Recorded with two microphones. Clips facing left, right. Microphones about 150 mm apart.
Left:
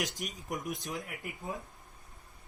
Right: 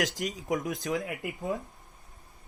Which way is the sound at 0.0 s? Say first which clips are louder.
Right 6 dB; 90° right.